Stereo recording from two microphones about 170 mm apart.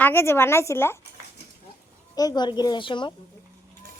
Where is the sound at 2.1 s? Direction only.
20° left (ahead or behind).